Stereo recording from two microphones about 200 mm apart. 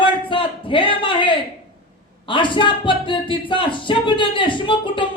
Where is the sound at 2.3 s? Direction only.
25° left (ahead or behind).